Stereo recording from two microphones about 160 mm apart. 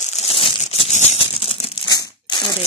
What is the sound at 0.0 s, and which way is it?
Crumpling, 40° left (ahead or behind).